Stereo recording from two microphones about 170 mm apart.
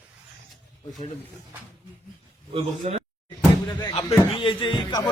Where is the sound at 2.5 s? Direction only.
35° right (ahead or behind).